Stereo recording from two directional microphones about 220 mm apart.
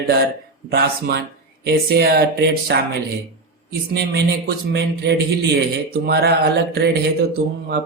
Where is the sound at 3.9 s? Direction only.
50° right (ahead or behind).